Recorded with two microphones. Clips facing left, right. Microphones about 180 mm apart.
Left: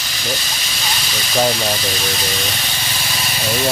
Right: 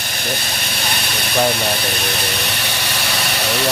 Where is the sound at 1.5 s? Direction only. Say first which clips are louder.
Even; 60° right (ahead or behind).